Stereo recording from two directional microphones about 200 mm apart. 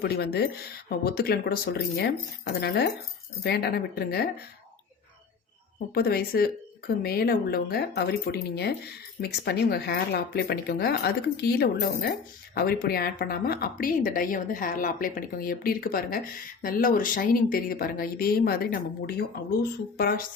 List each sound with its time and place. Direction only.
0.0 s speech: 55° left (ahead or behind)
5.9 s speech: 50° left (ahead or behind)